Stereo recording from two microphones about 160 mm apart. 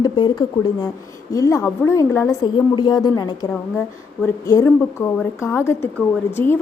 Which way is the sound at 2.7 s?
30° left (ahead or behind).